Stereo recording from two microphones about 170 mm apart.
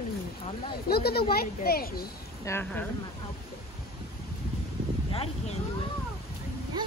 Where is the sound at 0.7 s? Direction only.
65° left (ahead or behind).